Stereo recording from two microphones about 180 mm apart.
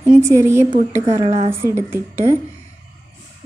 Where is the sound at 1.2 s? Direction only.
30° right (ahead or behind).